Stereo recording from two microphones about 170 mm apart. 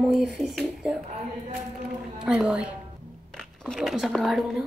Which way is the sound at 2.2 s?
5° right (ahead or behind).